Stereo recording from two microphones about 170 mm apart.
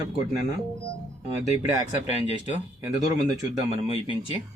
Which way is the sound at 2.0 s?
40° left (ahead or behind).